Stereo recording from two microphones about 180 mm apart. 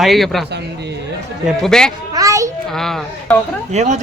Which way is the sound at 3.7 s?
40° right (ahead or behind).